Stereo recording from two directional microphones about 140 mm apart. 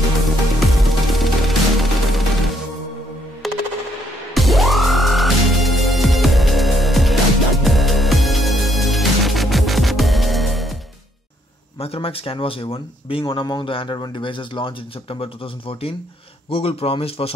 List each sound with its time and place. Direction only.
0.6 s music: centre (ahead or behind)
3.4 s machine gun: centre (ahead or behind)
4.3 s music: centre (ahead or behind)
11.8 s speech: 45° left (ahead or behind)